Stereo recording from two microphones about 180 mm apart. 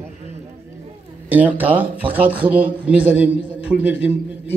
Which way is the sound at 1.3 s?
10° right (ahead or behind).